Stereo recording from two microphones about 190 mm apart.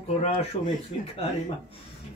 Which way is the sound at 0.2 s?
35° left (ahead or behind).